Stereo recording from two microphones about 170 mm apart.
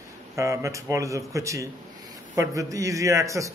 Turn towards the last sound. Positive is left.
turn(degrees=-20)  # may be behind; listen again after turning